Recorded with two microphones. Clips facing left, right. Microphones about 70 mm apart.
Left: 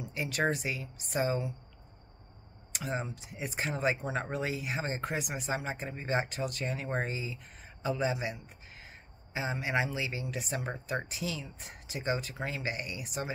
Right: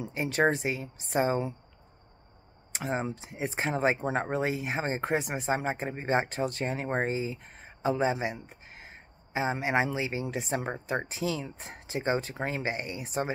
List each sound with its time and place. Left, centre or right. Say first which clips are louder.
0.0 s speech: right 5 dB; right
2.7 s speech: right 4 dB; right